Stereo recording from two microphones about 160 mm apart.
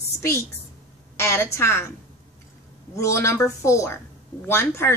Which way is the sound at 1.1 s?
15° left (ahead or behind).